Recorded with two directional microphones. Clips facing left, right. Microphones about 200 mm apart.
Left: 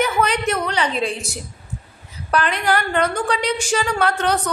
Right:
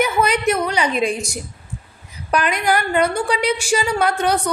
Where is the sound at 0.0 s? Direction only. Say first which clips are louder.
Right 2 dB; 10° right (ahead or behind).